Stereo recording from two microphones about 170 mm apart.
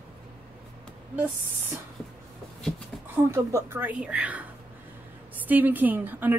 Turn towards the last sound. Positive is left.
turn(degrees=-10)  # may be behind; listen again after turning